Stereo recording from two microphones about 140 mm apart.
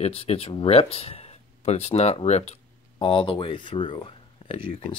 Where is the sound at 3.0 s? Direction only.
35° left (ahead or behind).